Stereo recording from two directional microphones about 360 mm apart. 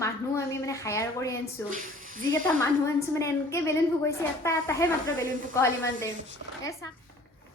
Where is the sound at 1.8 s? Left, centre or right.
Right.